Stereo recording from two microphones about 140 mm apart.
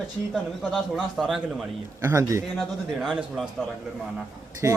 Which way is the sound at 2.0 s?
20° right (ahead or behind).